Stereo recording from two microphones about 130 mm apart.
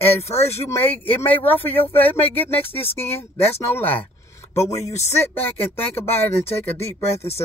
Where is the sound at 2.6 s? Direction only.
45° left (ahead or behind).